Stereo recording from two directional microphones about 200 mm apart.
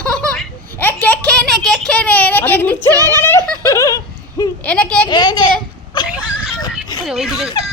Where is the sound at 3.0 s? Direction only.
20° right (ahead or behind).